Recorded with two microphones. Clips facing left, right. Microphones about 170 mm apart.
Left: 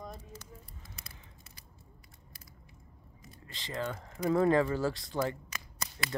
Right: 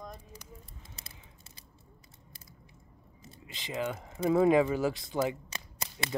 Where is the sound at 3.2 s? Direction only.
15° right (ahead or behind).